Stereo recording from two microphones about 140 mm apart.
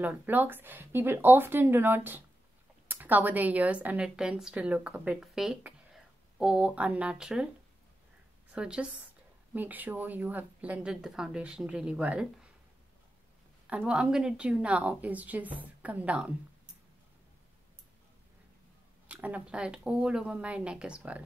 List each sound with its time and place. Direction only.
0.0 s a woman's voice: 15° right (ahead or behind)
8.5 s a woman's voice: 10° right (ahead or behind)
13.7 s a woman's voice: 10° right (ahead or behind)
19.0 s a woman's voice: 10° right (ahead or behind)